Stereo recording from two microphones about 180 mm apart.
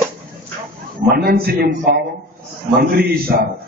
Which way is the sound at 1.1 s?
60° right (ahead or behind).